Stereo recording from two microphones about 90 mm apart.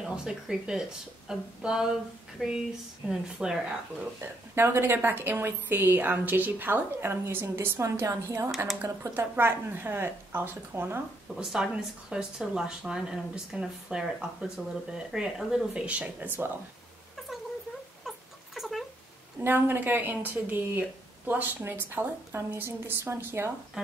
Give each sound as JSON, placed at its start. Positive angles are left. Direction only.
{"t": 0.0, "sound": "speech", "side_deg": -10}
{"t": 4.2, "sound": "a woman's voice", "side_deg": -25}
{"t": 11.3, "sound": "speech", "side_deg": -10}
{"t": 18.0, "sound": "a sound", "side_deg": 0}
{"t": 19.4, "sound": "a woman's voice", "side_deg": -20}